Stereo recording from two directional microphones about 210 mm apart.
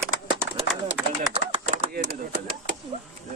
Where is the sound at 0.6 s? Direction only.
15° right (ahead or behind).